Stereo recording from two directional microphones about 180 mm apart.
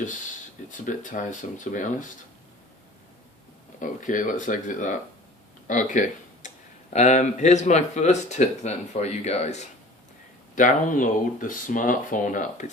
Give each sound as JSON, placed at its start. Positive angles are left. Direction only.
{"t": 0.7, "sound": "speech", "side_deg": 45}
{"t": 3.8, "sound": "speech", "side_deg": 45}